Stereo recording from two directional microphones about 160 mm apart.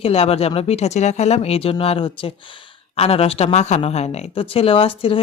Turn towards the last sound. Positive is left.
turn(degrees=35)  # may be behind; listen again after turning